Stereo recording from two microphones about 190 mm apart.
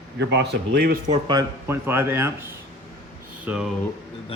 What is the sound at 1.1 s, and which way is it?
Speech, 25° right (ahead or behind).